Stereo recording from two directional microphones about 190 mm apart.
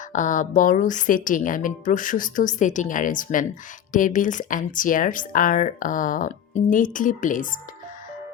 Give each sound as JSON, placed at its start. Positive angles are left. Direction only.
{"t": 0.1, "sound": "speech", "side_deg": 40}